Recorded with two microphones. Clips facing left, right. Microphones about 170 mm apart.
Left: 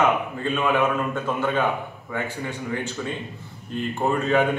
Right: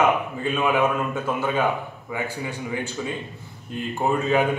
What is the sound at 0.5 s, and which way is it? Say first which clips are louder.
A man's voice: even; 10° right (ahead or behind).